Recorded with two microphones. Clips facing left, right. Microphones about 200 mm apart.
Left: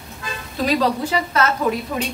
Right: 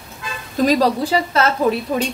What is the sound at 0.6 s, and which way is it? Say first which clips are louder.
A woman's voice: right 3 dB; 30° right (ahead or behind).